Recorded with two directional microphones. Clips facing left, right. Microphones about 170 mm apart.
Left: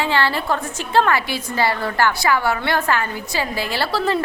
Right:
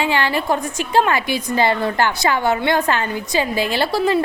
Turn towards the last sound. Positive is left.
turn(degrees=-15)  # may be behind; listen again after turning